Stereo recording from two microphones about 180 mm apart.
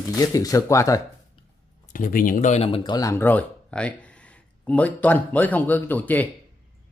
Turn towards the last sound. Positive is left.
turn(degrees=10)  # may be behind; listen again after turning